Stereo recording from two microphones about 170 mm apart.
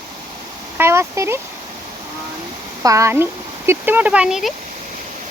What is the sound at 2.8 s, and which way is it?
Speech, 20° right (ahead or behind).